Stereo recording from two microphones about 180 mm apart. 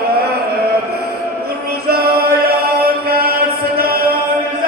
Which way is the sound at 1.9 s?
60° right (ahead or behind).